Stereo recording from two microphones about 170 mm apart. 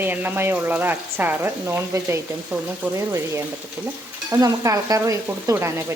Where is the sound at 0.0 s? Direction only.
10° right (ahead or behind).